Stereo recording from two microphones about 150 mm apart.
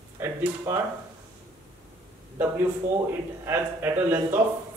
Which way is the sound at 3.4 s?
15° right (ahead or behind).